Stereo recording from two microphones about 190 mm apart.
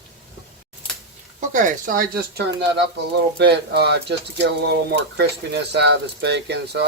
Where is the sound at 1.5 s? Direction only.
45° right (ahead or behind).